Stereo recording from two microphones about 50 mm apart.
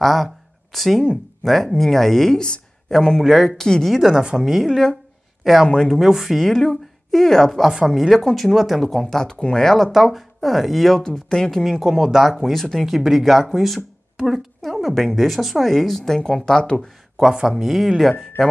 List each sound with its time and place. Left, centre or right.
0.0 s speech: centre
3.2 s speech: centre
3.5 s speech: centre
3.9 s speech: centre
5.4 s speech: centre
7.6 s speech: centre
8.5 s speech: centre
9.2 s speech: centre
11.1 s speech: centre
11.8 s speech: centre
12.8 s speech: centre
17.2 s speech: centre
18.4 s speech: centre